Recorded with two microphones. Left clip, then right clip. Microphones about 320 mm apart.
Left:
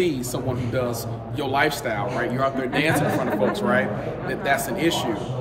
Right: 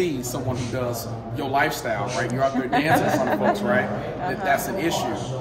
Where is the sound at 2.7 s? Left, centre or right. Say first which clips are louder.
Right 2 dB; right.